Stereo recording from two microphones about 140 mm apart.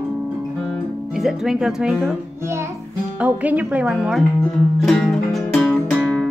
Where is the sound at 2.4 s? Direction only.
20° right (ahead or behind); by 6.3 s 5° left (ahead or behind).